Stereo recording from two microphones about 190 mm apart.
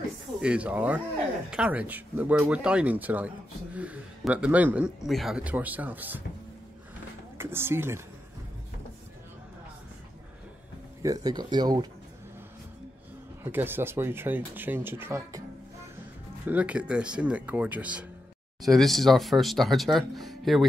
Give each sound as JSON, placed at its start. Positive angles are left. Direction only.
{"t": 0.4, "sound": "speech", "side_deg": -5}
{"t": 7.3, "sound": "speech", "side_deg": -10}
{"t": 11.0, "sound": "speech", "side_deg": -20}
{"t": 13.4, "sound": "speech", "side_deg": -10}
{"t": 16.4, "sound": "speech", "side_deg": -5}